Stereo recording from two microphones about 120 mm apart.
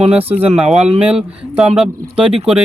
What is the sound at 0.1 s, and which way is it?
Speech, 15° right (ahead or behind).